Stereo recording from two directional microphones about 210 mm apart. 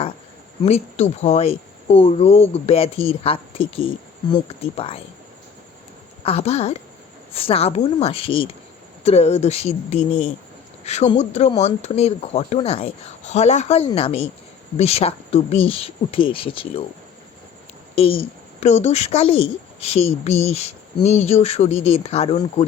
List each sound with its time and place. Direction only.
0.6 s speech: 30° left (ahead or behind)
6.2 s speech: 30° left (ahead or behind)
17.9 s speech: 25° left (ahead or behind)